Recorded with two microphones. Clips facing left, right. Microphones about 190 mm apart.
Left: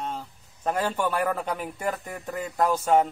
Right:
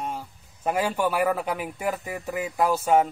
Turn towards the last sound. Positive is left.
turn(degrees=-5)  # may be behind; listen again after turning